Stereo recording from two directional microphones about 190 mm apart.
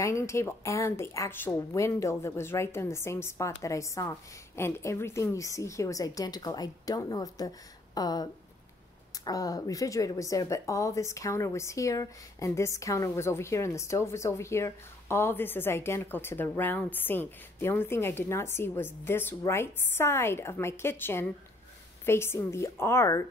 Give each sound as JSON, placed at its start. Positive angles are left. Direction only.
{"t": 0.0, "sound": "a woman's voice", "side_deg": 15}